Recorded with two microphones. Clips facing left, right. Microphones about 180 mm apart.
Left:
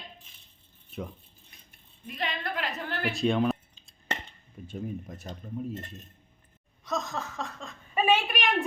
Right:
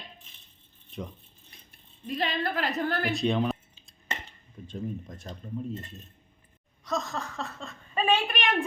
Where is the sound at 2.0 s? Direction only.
35° right (ahead or behind).